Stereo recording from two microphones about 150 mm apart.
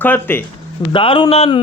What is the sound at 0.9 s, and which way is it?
Speech, 35° left (ahead or behind).